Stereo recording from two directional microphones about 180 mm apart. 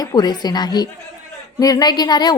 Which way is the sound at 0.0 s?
20° left (ahead or behind).